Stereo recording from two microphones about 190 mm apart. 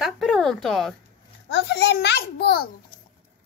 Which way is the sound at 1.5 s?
60° left (ahead or behind).